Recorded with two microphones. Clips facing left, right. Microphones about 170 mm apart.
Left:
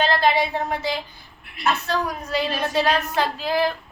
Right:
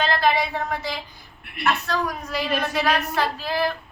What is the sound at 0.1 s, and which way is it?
Speech, 25° left (ahead or behind).